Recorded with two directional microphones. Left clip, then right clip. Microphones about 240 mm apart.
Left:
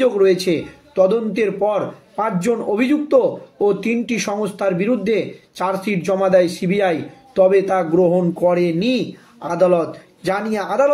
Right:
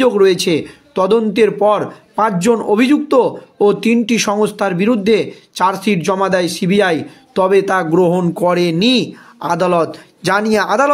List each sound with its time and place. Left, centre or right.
0.0 s speech: right